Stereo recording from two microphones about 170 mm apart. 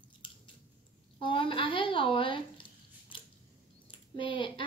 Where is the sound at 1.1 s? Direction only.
30° left (ahead or behind).